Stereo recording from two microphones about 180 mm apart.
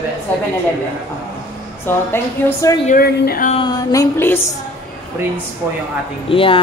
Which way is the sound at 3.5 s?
20° left (ahead or behind).